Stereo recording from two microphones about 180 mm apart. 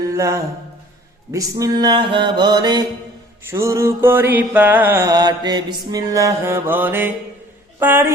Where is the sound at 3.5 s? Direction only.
15° right (ahead or behind).